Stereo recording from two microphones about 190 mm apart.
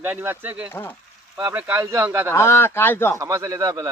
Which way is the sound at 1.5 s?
10° right (ahead or behind).